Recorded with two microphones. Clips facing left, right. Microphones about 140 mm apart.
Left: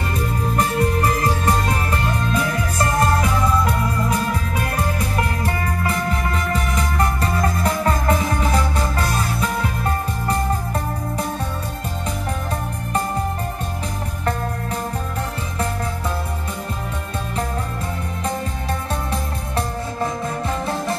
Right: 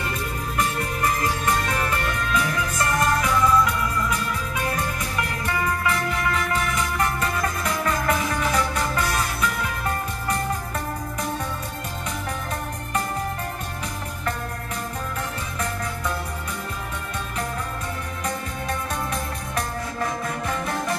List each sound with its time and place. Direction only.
0.6 s music: 35° left (ahead or behind)
19.5 s music: 25° left (ahead or behind)